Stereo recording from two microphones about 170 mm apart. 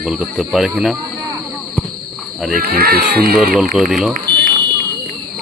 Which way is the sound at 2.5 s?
60° right (ahead or behind).